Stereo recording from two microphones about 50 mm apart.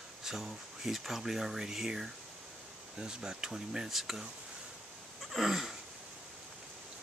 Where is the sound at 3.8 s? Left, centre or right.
Centre.